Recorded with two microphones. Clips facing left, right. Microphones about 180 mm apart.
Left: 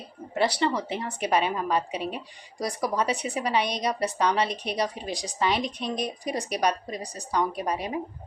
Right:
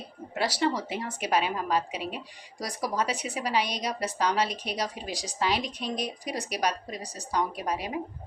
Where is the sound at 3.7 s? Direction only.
60° left (ahead or behind).